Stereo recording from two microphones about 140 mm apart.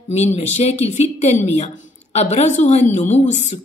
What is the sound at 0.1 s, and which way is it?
A woman's voice, 50° left (ahead or behind).